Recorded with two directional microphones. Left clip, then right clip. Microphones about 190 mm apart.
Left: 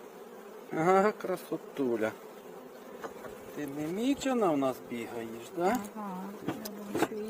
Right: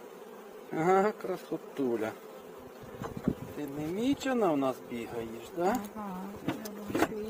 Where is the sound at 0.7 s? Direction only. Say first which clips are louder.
Left 1 dB; 30° left (ahead or behind).